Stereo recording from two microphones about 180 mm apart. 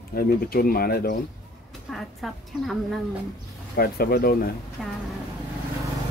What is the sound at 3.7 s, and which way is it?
Speech, 60° left (ahead or behind).